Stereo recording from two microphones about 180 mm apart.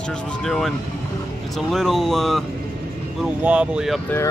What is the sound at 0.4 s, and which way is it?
Speech, centre (ahead or behind).